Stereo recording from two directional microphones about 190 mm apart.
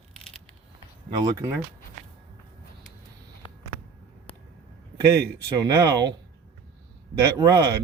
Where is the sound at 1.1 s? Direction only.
20° right (ahead or behind).